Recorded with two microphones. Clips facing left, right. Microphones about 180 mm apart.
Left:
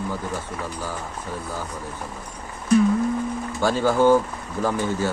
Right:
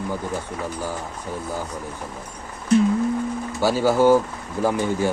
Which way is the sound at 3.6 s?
10° right (ahead or behind).